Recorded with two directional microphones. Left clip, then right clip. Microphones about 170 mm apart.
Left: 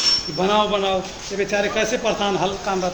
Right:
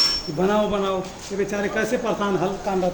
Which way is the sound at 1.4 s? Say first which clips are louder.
Left 3 dB; 75° right (ahead or behind).